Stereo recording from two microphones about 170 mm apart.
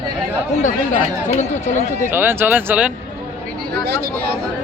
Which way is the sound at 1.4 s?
45° left (ahead or behind).